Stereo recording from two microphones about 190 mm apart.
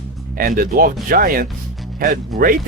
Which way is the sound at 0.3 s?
50° right (ahead or behind).